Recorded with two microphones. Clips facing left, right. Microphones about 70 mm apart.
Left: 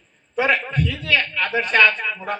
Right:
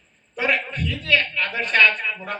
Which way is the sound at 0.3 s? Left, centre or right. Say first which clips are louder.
Left 4 dB; left.